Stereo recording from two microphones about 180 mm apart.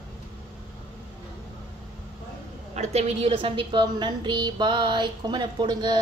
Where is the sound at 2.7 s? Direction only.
40° right (ahead or behind).